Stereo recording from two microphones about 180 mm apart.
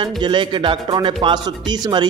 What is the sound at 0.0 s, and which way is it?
Speech, 25° right (ahead or behind).